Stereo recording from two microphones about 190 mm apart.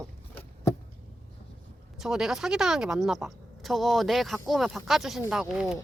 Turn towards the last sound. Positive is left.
turn(degrees=0)  # may be behind; listen again after turning